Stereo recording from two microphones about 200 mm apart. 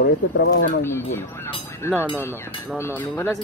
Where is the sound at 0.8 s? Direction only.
10° left (ahead or behind).